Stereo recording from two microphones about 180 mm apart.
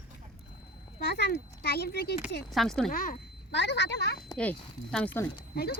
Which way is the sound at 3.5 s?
75° left (ahead or behind).